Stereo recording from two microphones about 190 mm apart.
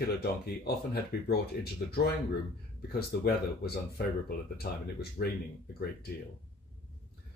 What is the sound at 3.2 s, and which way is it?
Speech, 55° left (ahead or behind).